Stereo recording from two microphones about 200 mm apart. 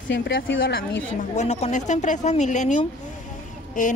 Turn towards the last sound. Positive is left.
turn(degrees=40)  # may be behind; listen again after turning